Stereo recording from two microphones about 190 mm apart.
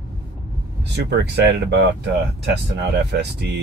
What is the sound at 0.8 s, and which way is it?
Speech, 60° right (ahead or behind).